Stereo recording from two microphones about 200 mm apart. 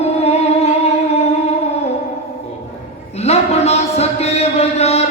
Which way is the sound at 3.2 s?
30° left (ahead or behind).